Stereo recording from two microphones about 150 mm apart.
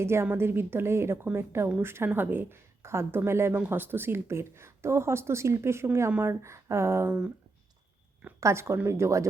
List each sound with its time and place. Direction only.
0.0 s a woman's voice: 15° right (ahead or behind)
8.4 s speech: 20° right (ahead or behind)